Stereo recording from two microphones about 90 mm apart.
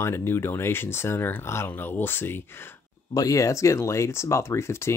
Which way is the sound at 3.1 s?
40° left (ahead or behind).